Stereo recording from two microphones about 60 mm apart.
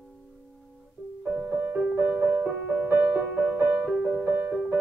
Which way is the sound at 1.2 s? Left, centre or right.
Right.